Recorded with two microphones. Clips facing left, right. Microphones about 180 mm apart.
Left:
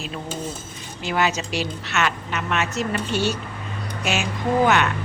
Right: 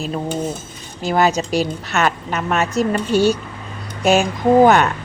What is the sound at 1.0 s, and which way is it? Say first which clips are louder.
A woman's voice: right 6 dB; 40° right (ahead or behind).